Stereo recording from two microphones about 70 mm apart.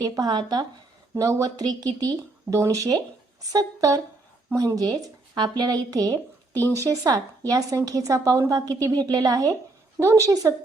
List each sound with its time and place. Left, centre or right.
0.0 s speech: right
1.2 s a woman's voice: right
2.5 s a woman's voice: right
6.7 s a woman's voice: right
10.0 s a woman's voice: right